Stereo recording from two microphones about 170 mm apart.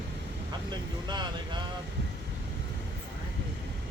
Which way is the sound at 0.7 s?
25° right (ahead or behind).